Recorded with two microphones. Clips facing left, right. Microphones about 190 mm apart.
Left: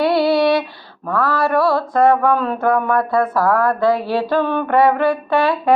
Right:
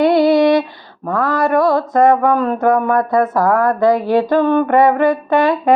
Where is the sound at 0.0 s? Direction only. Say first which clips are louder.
Right 4 dB; 20° right (ahead or behind).